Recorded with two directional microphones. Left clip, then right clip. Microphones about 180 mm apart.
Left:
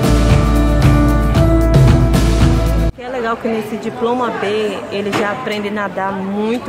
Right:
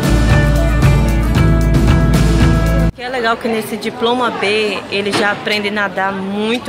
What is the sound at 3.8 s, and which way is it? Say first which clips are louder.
A woman's voice: right 2 dB; 10° left (ahead or behind).